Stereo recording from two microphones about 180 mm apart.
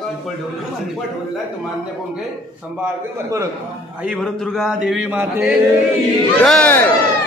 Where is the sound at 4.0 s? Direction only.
Centre (ahead or behind).